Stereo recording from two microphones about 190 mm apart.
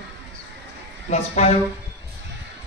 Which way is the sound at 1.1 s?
35° left (ahead or behind).